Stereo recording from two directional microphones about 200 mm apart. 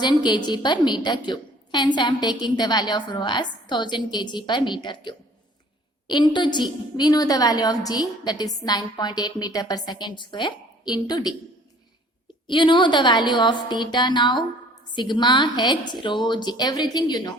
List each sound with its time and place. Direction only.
0.0 s a woman's voice: 20° left (ahead or behind)
12.5 s a woman's voice: 25° left (ahead or behind)